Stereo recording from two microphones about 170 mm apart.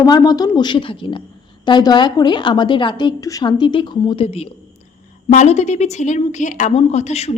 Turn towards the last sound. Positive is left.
turn(degrees=40)  # may be behind; listen again after turning